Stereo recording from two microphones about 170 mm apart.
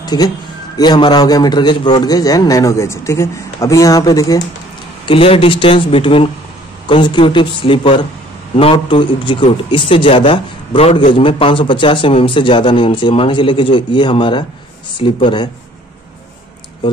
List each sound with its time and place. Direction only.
0.0 s a man's voice: 25° left (ahead or behind)
5.0 s a man's voice: 30° left (ahead or behind)